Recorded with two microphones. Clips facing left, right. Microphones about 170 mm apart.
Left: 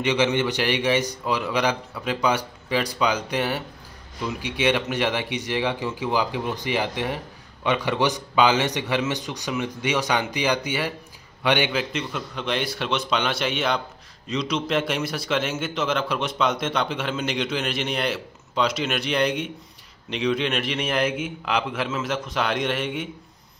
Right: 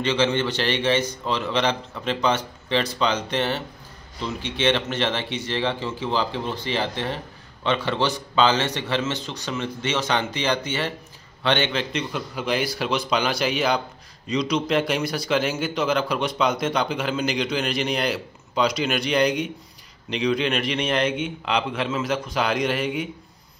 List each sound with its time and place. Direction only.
0.0 s a man's voice: 15° left (ahead or behind); by 23.0 s centre (ahead or behind)